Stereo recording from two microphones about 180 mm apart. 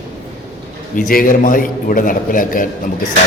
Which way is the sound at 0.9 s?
50° left (ahead or behind).